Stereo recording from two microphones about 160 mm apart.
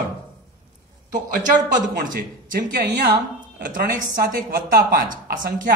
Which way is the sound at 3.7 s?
60° right (ahead or behind).